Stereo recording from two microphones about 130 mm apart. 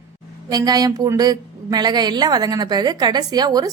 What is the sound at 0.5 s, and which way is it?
A woman's voice, 30° right (ahead or behind).